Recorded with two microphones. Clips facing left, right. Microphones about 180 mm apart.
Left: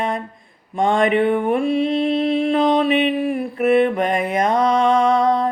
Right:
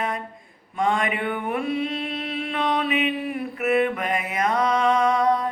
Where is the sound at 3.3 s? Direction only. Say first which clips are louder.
Left 6 dB; 30° left (ahead or behind).